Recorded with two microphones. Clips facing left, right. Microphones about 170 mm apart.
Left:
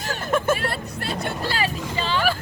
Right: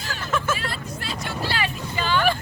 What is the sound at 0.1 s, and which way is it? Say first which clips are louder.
Speech: left 5 dB; 50° left (ahead or behind).